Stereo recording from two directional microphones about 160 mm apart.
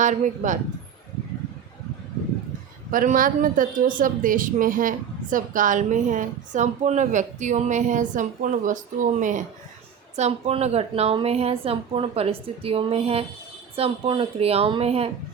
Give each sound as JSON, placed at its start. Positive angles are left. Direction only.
{"t": 0.0, "sound": "a woman's voice", "side_deg": -50}
{"t": 2.9, "sound": "a woman's voice", "side_deg": -60}
{"t": 10.2, "sound": "a woman's voice", "side_deg": -40}